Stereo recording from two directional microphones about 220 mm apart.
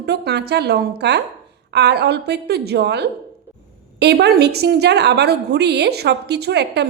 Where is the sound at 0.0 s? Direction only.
50° right (ahead or behind).